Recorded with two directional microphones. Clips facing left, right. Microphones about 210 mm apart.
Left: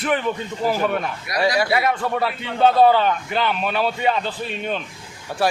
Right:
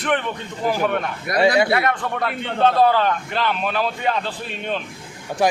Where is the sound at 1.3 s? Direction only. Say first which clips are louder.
Right 5 dB; 50° right (ahead or behind).